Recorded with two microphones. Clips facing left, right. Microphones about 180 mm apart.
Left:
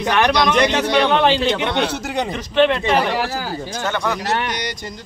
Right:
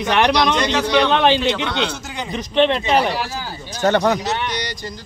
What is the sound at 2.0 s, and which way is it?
Speech, 65° left (ahead or behind).